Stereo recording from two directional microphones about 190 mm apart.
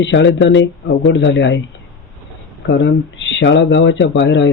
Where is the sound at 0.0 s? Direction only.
70° left (ahead or behind).